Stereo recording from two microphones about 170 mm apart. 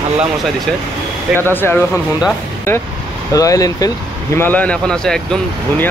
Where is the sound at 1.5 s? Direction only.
10° left (ahead or behind).